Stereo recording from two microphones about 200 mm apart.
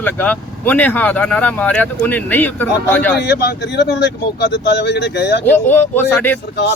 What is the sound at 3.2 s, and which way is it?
Speech, 60° left (ahead or behind).